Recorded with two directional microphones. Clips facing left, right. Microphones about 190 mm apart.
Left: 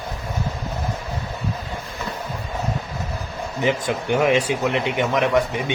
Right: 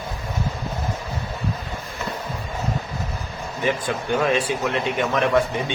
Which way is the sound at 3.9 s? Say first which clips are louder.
Left 3 dB; 15° left (ahead or behind).